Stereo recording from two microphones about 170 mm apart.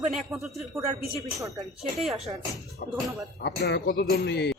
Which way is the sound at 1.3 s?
20° right (ahead or behind).